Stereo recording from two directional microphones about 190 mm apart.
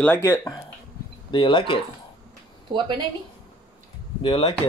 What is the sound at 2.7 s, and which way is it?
Speech, 25° right (ahead or behind).